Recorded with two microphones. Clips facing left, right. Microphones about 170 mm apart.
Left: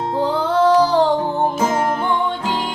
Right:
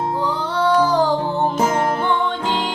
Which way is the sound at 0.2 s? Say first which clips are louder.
Left 9 dB; 50° left (ahead or behind).